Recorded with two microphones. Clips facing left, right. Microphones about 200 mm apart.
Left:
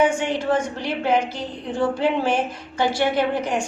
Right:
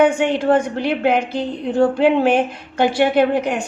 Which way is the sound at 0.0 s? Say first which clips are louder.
Right 5 dB; 55° right (ahead or behind).